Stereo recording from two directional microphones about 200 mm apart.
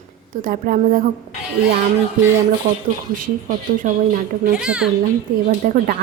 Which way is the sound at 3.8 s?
40° right (ahead or behind).